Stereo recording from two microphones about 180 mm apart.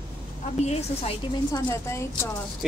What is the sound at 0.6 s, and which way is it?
Speech, 35° left (ahead or behind).